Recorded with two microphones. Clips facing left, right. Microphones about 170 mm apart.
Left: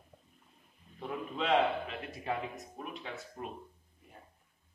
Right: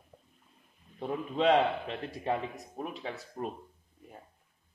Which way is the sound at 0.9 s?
35° right (ahead or behind).